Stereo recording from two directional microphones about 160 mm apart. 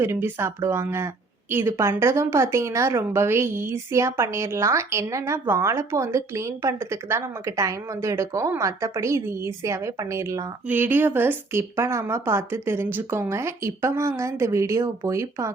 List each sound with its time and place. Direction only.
0.0 s speech: 15° right (ahead or behind)